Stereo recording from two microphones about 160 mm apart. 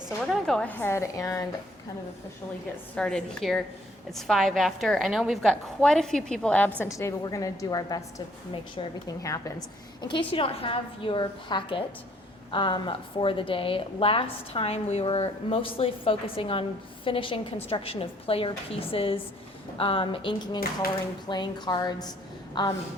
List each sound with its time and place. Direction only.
0.4 s a woman's voice: 5° left (ahead or behind)
2.9 s a woman's voice: 5° left (ahead or behind); by 22.7 s 30° left (ahead or behind)